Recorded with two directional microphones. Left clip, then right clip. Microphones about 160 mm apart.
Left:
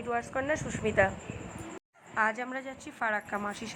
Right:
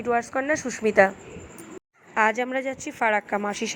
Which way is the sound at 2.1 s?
25° right (ahead or behind).